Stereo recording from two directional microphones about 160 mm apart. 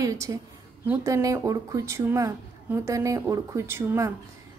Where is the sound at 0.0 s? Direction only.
20° right (ahead or behind).